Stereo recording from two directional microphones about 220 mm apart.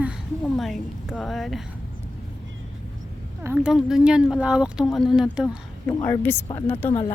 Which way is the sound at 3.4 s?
5° right (ahead or behind).